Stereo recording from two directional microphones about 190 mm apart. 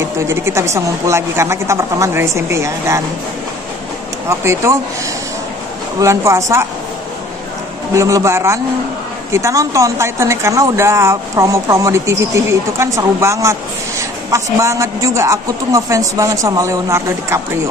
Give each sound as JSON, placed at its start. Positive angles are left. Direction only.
{"t": 0.0, "sound": "a woman's voice", "side_deg": -15}
{"t": 4.3, "sound": "a woman's voice", "side_deg": -15}
{"t": 5.9, "sound": "a woman's voice", "side_deg": -15}
{"t": 7.9, "sound": "a woman's voice", "side_deg": -15}